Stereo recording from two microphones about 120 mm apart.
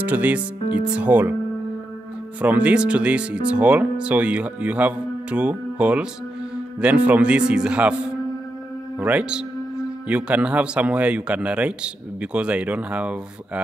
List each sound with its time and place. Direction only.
0.0 s speech: 15° right (ahead or behind)
2.4 s speech: 10° right (ahead or behind)
9.0 s speech: 10° right (ahead or behind)